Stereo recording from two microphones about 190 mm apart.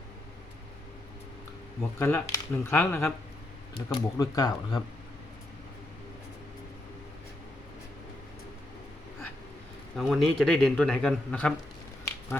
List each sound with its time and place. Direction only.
2.0 s speech: 15° left (ahead or behind)
9.9 s a man's voice: centre (ahead or behind)